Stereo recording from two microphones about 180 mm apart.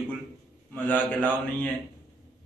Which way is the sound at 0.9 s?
10° left (ahead or behind).